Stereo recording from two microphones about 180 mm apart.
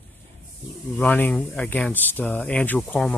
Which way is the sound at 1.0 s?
10° left (ahead or behind).